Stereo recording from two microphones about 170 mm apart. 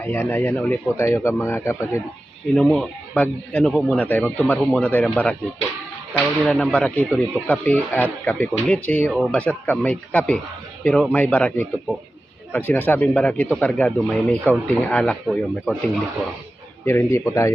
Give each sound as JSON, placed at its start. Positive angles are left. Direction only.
{"t": 0.0, "sound": "speech", "side_deg": 10}
{"t": 2.6, "sound": "a man's voice", "side_deg": 0}
{"t": 16.8, "sound": "speech", "side_deg": 15}